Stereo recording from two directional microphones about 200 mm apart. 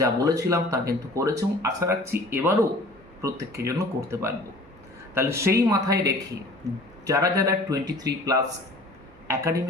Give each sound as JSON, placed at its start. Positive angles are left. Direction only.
{"t": 0.0, "sound": "speech", "side_deg": -15}